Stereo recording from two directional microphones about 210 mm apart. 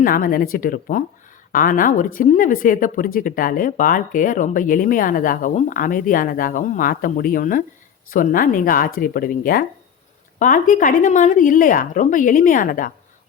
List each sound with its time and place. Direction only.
0.0 s speech: 40° left (ahead or behind)